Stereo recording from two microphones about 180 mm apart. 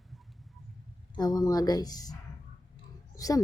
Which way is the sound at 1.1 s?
20° left (ahead or behind).